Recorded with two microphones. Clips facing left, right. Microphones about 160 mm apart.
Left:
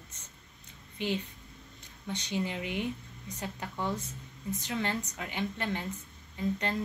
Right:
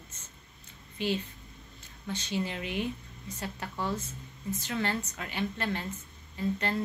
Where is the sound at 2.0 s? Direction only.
15° left (ahead or behind).